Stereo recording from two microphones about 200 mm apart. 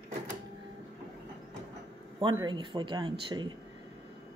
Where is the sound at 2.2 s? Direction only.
20° right (ahead or behind).